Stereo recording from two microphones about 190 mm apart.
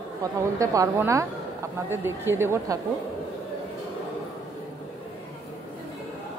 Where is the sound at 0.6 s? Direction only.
15° right (ahead or behind).